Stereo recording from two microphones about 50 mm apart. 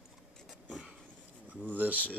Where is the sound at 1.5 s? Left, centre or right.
Right.